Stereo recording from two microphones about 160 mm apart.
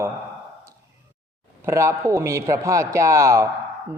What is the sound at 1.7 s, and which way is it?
A man's voice, 15° right (ahead or behind).